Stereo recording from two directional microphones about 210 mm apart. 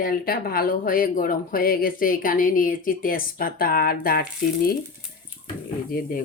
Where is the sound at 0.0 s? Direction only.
45° left (ahead or behind).